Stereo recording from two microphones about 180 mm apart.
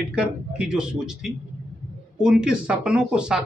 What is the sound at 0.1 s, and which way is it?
A man's voice, 5° right (ahead or behind).